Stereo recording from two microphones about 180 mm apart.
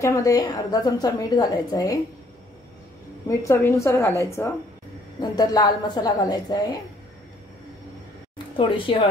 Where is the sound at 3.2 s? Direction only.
15° left (ahead or behind).